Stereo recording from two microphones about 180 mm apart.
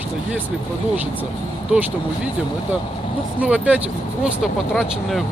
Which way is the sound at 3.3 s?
10° right (ahead or behind).